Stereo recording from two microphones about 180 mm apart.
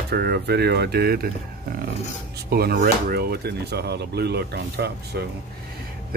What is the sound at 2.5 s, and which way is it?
Speech, 60° right (ahead or behind).